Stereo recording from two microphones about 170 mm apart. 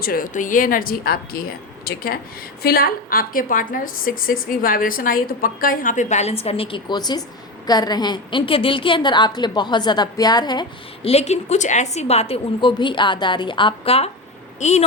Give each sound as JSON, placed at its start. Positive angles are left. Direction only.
{"t": 0.0, "sound": "a woman's voice", "side_deg": 55}
{"t": 11.1, "sound": "a woman's voice", "side_deg": 40}